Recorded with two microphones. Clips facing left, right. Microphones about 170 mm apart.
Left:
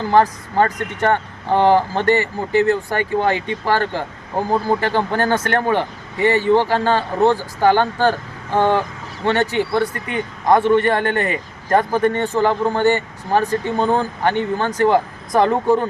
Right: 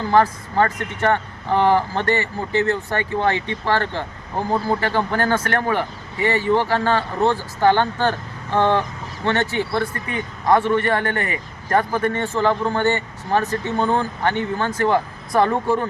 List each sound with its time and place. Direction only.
0.1 s speech: 15° left (ahead or behind)